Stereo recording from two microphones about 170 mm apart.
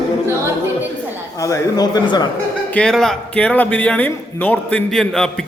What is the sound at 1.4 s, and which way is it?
Speech, 20° left (ahead or behind).